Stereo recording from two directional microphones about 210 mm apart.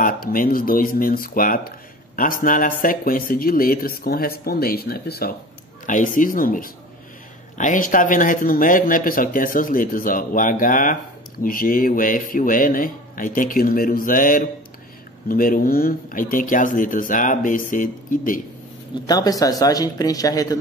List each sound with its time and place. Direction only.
0.0 s speech: 40° left (ahead or behind)
19.0 s speech: 20° left (ahead or behind)